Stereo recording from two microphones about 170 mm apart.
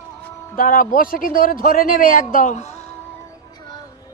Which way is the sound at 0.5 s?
55° left (ahead or behind).